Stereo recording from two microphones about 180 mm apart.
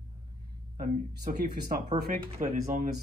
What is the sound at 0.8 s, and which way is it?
Speech, 55° right (ahead or behind).